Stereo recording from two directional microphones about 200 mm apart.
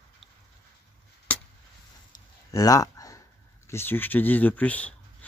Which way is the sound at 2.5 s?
15° left (ahead or behind).